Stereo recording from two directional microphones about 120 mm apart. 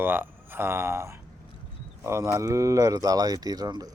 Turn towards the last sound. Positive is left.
turn(degrees=-35)  # may be behind; listen again after turning